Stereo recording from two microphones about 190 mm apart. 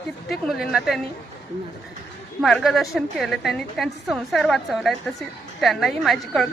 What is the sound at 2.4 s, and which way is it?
A woman's voice, centre (ahead or behind).